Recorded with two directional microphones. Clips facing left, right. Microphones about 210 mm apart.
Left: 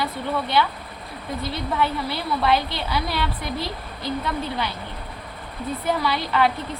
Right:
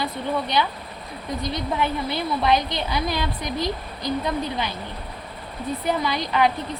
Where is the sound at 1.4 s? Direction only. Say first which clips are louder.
Left 1 dB; 20° right (ahead or behind).